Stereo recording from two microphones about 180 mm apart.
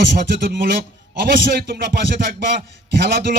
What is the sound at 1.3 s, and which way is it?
Speech, 60° right (ahead or behind).